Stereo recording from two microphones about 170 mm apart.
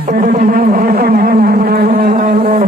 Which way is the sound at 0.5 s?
55° right (ahead or behind).